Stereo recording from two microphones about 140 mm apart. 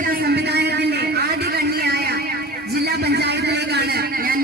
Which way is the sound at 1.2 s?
90° right.